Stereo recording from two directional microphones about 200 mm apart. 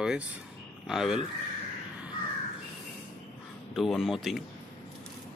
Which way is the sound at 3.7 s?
Centre (ahead or behind).